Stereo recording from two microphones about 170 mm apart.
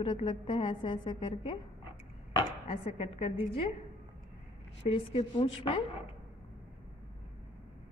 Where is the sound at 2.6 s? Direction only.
40° left (ahead or behind).